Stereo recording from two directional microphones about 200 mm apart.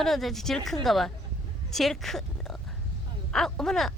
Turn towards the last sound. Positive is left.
turn(degrees=0)  # may be behind; listen again after turning